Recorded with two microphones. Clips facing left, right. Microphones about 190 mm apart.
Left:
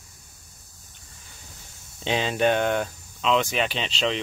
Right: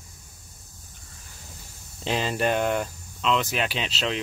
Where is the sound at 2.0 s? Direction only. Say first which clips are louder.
Left 2 dB; centre (ahead or behind).